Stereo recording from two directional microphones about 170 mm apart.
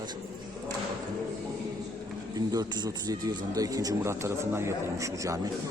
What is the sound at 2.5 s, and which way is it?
A man's voice, 20° right (ahead or behind).